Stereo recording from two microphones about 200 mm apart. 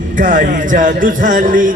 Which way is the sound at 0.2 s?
40° right (ahead or behind).